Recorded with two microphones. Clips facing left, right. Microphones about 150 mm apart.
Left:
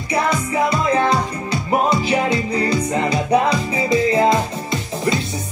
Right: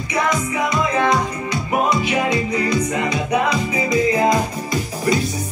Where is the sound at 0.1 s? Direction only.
30° left (ahead or behind).